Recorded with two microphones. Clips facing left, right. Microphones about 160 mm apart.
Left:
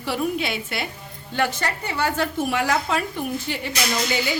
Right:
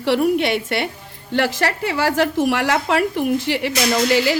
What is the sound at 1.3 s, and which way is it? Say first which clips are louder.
A woman's voice: right 5 dB; 90° right.